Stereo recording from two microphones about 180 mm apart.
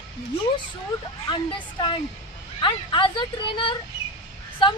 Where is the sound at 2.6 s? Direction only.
25° left (ahead or behind).